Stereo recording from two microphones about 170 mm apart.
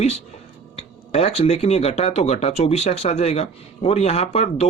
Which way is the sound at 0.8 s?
35° left (ahead or behind).